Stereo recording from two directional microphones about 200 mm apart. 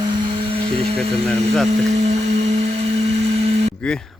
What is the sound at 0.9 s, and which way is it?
Speech, 5° left (ahead or behind).